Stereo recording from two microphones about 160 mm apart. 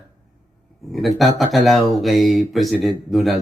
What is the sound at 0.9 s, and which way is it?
Speech, centre (ahead or behind).